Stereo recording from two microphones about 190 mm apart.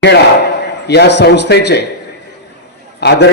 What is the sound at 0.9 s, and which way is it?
Speech, 60° left (ahead or behind).